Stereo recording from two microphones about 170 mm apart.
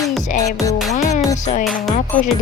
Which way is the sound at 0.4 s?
20° left (ahead or behind).